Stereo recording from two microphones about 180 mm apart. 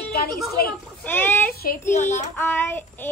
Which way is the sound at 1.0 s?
10° left (ahead or behind).